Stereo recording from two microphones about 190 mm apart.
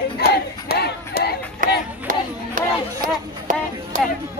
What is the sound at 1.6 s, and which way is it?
Music, 45° right (ahead or behind).